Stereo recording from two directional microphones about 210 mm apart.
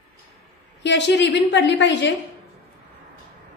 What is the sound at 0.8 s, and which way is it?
A woman's voice, 55° left (ahead or behind).